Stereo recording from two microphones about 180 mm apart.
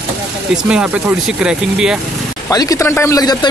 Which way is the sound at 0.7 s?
5° right (ahead or behind).